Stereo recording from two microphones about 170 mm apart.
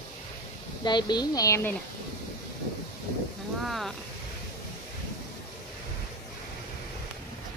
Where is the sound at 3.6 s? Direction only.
Centre (ahead or behind).